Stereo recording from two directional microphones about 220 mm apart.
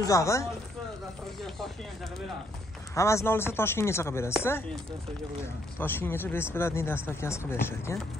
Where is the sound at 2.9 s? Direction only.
15° left (ahead or behind).